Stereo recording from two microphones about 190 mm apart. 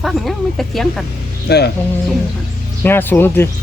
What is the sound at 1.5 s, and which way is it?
Speech, 60° left (ahead or behind).